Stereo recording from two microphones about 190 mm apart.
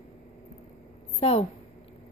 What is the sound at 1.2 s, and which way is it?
Speech, 30° left (ahead or behind).